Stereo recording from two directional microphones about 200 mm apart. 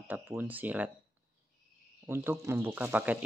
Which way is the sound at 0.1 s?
10° right (ahead or behind).